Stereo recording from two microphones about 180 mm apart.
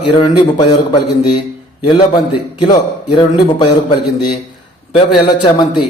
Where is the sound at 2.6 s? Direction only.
25° left (ahead or behind).